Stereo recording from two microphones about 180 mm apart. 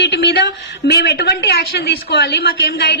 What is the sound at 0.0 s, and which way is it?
A woman's voice, 70° left (ahead or behind).